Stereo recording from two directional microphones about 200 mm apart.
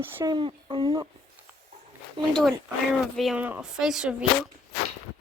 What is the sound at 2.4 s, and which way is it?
Speech, centre (ahead or behind).